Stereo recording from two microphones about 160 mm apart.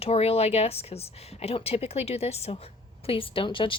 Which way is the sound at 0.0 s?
40° left (ahead or behind).